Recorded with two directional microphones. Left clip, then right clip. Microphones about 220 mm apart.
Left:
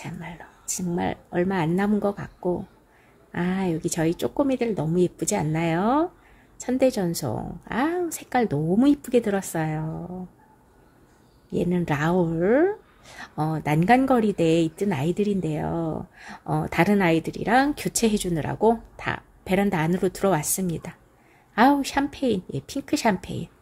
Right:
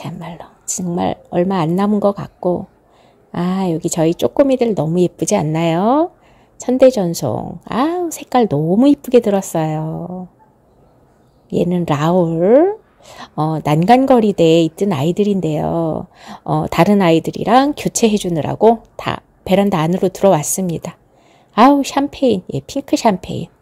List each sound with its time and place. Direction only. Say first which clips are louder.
0.0 s speech: right 8 dB; 30° right (ahead or behind)
11.4 s speech: right 9 dB; 25° right (ahead or behind)